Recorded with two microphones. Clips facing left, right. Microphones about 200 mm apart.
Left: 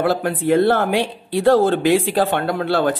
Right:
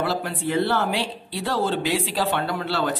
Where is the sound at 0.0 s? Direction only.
50° left (ahead or behind).